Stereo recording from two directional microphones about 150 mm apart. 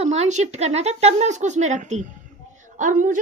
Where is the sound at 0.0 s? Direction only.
45° right (ahead or behind).